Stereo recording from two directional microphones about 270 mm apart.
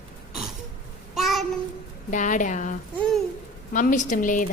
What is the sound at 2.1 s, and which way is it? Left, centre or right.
A woman's voice, left.